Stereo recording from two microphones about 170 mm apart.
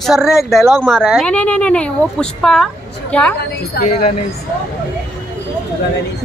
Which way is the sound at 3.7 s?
55° left (ahead or behind).